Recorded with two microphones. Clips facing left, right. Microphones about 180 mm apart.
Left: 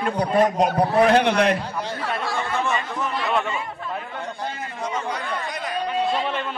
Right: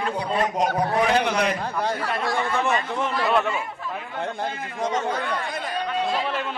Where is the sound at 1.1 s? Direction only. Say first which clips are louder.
Left 4 dB; 60° left (ahead or behind).